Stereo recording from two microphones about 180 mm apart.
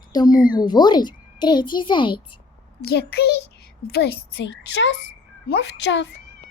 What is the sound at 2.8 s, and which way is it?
A child's voice, 60° left (ahead or behind).